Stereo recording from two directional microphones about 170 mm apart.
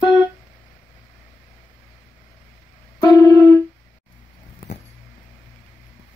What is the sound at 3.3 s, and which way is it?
Music, 10° left (ahead or behind).